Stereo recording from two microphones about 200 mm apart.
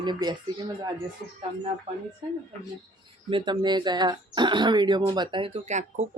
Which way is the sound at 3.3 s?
25° right (ahead or behind).